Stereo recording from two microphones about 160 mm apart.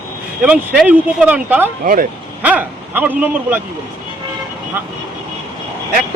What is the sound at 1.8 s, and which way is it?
Speech, 60° right (ahead or behind).